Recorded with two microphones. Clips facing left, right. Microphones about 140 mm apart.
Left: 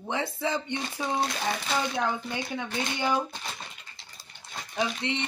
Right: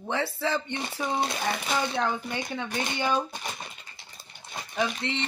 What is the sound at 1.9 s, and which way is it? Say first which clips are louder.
Speech: right 1 dB; 15° left (ahead or behind).